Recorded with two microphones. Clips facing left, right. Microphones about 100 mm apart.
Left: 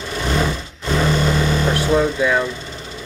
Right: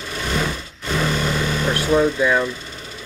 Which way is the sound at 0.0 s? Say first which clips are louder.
Left 3 dB; 25° left (ahead or behind).